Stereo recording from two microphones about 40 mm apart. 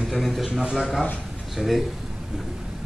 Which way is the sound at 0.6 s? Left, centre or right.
Centre.